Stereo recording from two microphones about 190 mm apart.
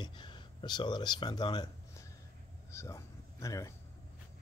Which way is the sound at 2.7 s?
15° left (ahead or behind).